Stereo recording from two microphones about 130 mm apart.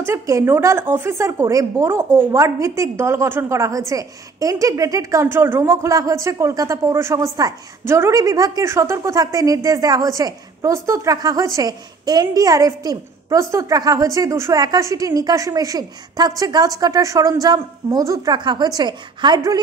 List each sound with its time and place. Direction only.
0.0 s a woman's voice: 20° right (ahead or behind)